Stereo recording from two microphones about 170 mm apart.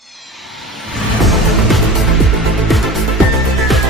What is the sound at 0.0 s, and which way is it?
Music, centre (ahead or behind).